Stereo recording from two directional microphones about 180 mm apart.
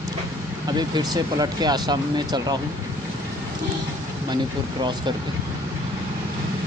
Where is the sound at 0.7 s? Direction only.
20° right (ahead or behind).